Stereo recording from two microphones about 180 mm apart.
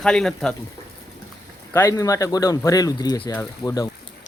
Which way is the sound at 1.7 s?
15° left (ahead or behind).